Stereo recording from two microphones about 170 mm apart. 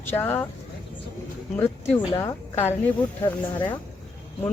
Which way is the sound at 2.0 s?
25° left (ahead or behind).